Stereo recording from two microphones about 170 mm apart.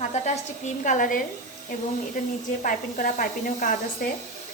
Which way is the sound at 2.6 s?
50° left (ahead or behind).